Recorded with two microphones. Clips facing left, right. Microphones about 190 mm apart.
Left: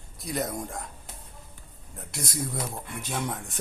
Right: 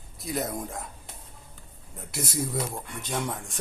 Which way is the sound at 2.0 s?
Centre (ahead or behind).